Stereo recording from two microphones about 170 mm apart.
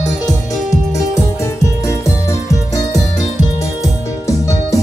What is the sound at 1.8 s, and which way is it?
Music, 15° left (ahead or behind).